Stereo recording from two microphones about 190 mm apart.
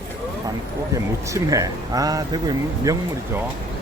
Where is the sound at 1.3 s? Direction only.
20° right (ahead or behind).